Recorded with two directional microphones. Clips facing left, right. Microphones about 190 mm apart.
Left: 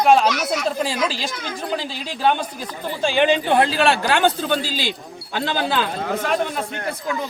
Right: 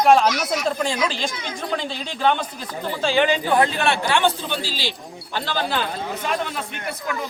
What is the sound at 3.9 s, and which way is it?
Speech, 45° left (ahead or behind).